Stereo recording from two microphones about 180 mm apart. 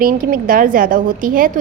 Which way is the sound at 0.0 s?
50° right (ahead or behind).